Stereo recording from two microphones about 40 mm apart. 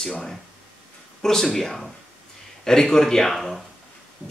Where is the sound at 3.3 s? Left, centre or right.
Centre.